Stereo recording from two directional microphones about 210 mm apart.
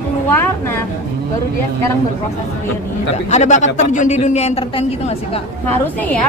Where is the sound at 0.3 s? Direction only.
10° left (ahead or behind).